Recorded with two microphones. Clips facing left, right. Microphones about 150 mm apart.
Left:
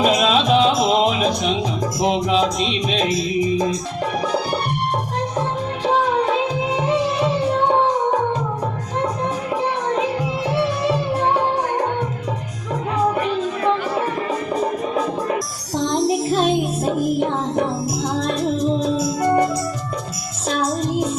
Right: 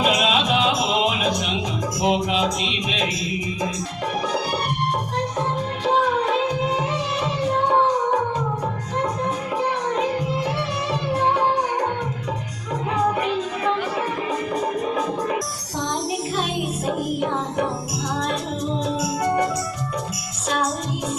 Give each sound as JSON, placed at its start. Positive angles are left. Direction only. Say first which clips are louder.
{"t": 0.0, "sound": "music", "louder": "left 4 dB", "side_deg": 40}
{"t": 16.0, "sound": "music", "louder": "left 7 dB", "side_deg": 35}
{"t": 18.8, "sound": "music", "louder": "left 4 dB", "side_deg": 35}